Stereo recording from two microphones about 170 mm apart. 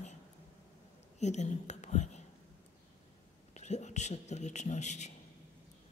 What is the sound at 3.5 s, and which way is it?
A man's voice, 40° left (ahead or behind).